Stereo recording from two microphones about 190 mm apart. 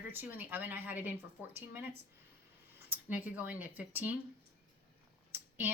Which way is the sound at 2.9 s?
10° right (ahead or behind).